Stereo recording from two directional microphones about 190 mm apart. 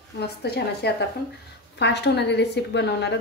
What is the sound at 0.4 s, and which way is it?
A woman's voice, 60° left (ahead or behind).